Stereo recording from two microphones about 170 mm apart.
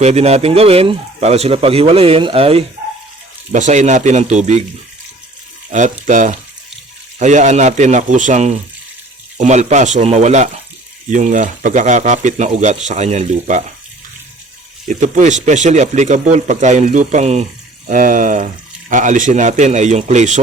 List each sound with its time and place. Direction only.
0.0 s speech: 40° right (ahead or behind)
3.5 s speech: 45° right (ahead or behind)
5.7 s speech: 45° right (ahead or behind)
14.8 s speech: 45° right (ahead or behind)
17.8 s speech: 50° right (ahead or behind)